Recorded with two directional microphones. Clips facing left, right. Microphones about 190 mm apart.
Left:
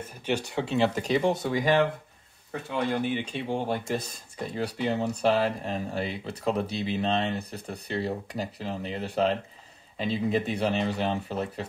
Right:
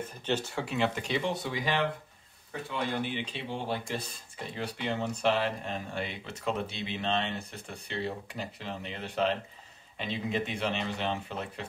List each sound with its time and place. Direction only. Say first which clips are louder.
0.2 s speech: left 4 dB; 15° left (ahead or behind)
0.7 s speech: left 6 dB; 40° left (ahead or behind)
3.3 s speech: left 5 dB; 50° left (ahead or behind)